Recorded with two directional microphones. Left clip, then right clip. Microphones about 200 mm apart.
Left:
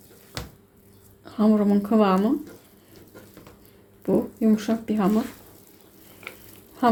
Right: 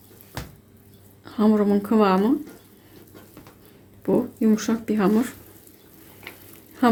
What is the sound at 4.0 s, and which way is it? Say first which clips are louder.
Speech: right 1 dB; 10° right (ahead or behind).